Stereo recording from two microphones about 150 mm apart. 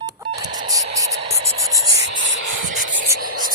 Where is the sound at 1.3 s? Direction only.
45° right (ahead or behind).